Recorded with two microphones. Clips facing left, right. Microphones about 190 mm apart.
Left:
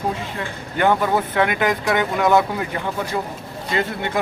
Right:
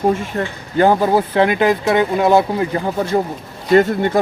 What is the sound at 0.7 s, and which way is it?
Speech, 35° right (ahead or behind).